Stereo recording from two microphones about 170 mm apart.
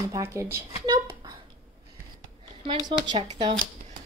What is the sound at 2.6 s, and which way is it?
Speech, 30° right (ahead or behind).